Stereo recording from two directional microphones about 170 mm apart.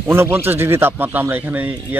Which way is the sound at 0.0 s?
15° right (ahead or behind).